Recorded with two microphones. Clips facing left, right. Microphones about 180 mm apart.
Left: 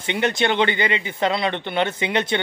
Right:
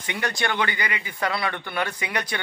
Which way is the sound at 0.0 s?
25° left (ahead or behind).